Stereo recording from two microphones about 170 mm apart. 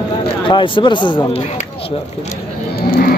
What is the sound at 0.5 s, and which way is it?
Speech, 30° left (ahead or behind).